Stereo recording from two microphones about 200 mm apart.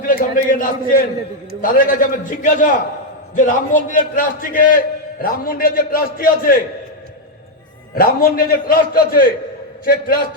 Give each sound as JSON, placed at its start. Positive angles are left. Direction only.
{"t": 0.0, "sound": "a man's voice", "side_deg": 45}
{"t": 7.9, "sound": "a man's voice", "side_deg": 45}